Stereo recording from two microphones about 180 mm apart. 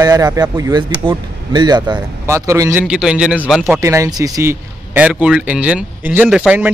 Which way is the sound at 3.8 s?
15° right (ahead or behind).